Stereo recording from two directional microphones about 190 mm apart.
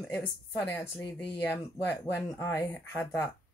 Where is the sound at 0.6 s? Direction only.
10° left (ahead or behind).